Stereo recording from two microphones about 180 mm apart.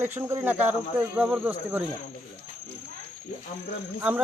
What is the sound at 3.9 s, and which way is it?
Speech, 10° right (ahead or behind).